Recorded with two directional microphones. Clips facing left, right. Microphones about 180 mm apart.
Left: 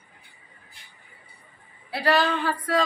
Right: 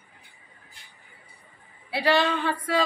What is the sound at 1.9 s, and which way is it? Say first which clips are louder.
Speech: even; centre (ahead or behind).